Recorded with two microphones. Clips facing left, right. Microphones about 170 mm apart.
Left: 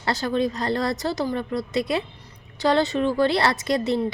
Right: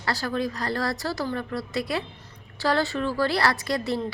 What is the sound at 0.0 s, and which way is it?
A woman's voice, 20° left (ahead or behind).